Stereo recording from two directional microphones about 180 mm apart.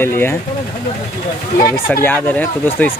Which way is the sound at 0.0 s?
10° left (ahead or behind).